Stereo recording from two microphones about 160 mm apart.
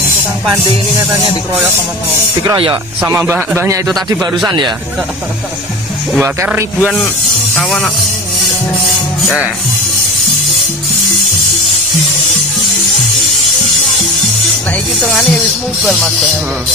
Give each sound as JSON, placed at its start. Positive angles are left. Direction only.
{"t": 2.4, "sound": "speech", "side_deg": -25}
{"t": 3.0, "sound": "speech", "side_deg": -10}
{"t": 3.8, "sound": "speech", "side_deg": 0}
{"t": 6.2, "sound": "speech", "side_deg": -10}
{"t": 15.0, "sound": "speech", "side_deg": 0}